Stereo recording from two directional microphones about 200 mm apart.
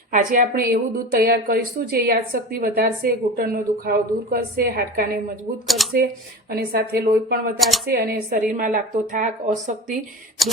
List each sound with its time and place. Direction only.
0.1 s a woman's voice: 40° right (ahead or behind)
5.6 s speech: centre (ahead or behind)
6.5 s a woman's voice: 50° right (ahead or behind)
10.4 s speech: centre (ahead or behind)